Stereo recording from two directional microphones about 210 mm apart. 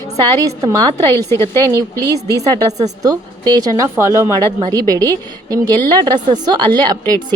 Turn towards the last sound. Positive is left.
turn(degrees=-20)  # may be behind; listen again after turning